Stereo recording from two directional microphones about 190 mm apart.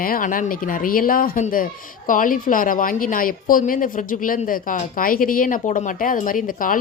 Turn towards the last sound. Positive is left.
turn(degrees=45)  # may be behind; listen again after turning